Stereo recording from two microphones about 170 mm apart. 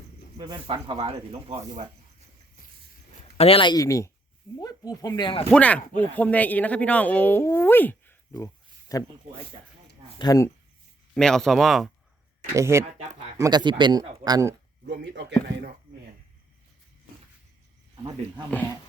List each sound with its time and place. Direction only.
0.3 s speech: 25° right (ahead or behind)
3.3 s speech: 35° left (ahead or behind)
5.5 s speech: 5° left (ahead or behind)
10.2 s speech: 20° left (ahead or behind)
11.1 s speech: 5° left (ahead or behind)
12.5 s speech: 15° right (ahead or behind)
13.0 s speech: 40° right (ahead or behind)
13.4 s speech: 25° right (ahead or behind)
15.0 s speech: 90° right